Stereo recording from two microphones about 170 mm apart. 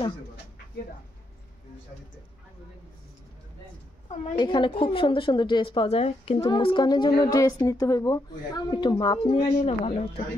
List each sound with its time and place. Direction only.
4.4 s a woman's voice: 25° left (ahead or behind)